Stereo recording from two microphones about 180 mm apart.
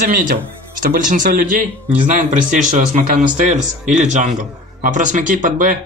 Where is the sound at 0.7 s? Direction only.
45° right (ahead or behind).